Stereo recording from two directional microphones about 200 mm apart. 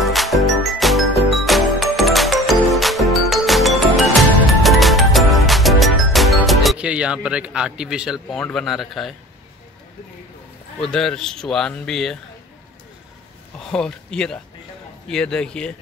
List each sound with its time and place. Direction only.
0.0 s jingle: centre (ahead or behind)
4.5 s music: centre (ahead or behind)
10.8 s a man's voice: 5° left (ahead or behind)
13.7 s a man's voice: 5° left (ahead or behind)